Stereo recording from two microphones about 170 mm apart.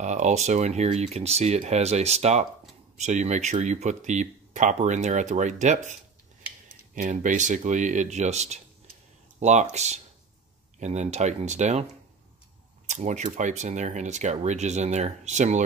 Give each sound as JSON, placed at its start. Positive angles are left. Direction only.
{"t": 0.0, "sound": "speech", "side_deg": -45}
{"t": 7.0, "sound": "speech", "side_deg": -45}
{"t": 12.8, "sound": "speech", "side_deg": -45}